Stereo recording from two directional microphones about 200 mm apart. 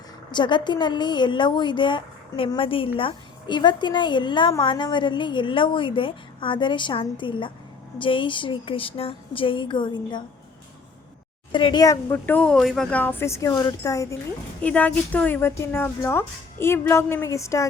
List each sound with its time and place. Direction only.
0.3 s a woman's voice: 25° left (ahead or behind)
11.5 s speech: 20° left (ahead or behind)
14.6 s speech: 5° left (ahead or behind)